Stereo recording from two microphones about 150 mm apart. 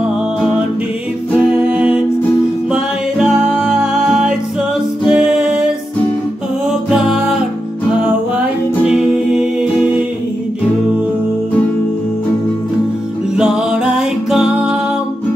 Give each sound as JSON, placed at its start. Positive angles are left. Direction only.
{"t": 1.3, "sound": "music", "side_deg": -10}
{"t": 8.8, "sound": "music", "side_deg": -5}
{"t": 13.4, "sound": "music", "side_deg": -5}